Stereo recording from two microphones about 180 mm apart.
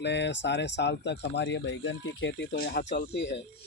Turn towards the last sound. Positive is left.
turn(degrees=70)  # may be behind; listen again after turning